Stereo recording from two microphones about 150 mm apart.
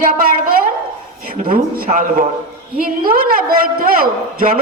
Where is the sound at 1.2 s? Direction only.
55° right (ahead or behind).